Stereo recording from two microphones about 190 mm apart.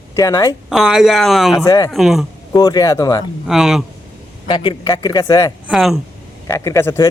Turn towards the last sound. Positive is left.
turn(degrees=15)  # may be behind; listen again after turning